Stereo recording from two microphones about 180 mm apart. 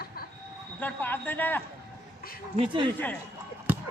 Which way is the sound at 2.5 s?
25° right (ahead or behind).